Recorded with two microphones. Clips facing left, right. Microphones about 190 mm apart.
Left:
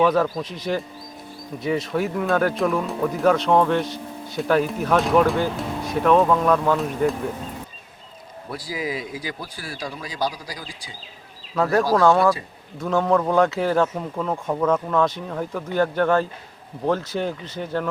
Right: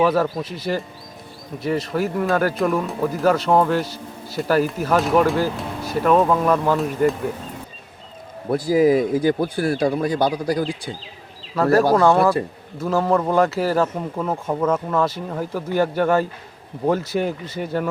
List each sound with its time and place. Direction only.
0.0 s speech: 5° right (ahead or behind)
8.4 s speech: 50° right (ahead or behind)
11.5 s speech: centre (ahead or behind)